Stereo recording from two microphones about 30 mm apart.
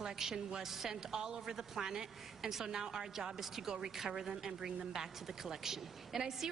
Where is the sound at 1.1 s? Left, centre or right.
Right.